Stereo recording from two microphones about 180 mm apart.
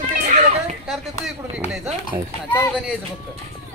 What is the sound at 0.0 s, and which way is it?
Children playing, 40° right (ahead or behind).